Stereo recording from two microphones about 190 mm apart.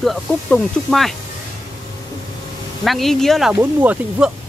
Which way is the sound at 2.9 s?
Centre (ahead or behind).